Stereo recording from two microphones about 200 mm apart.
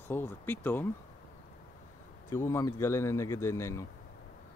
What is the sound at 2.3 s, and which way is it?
Speech, 15° left (ahead or behind).